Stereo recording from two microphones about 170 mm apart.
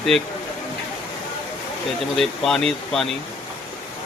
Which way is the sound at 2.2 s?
Centre (ahead or behind).